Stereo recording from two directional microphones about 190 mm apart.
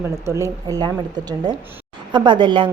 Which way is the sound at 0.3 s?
15° right (ahead or behind).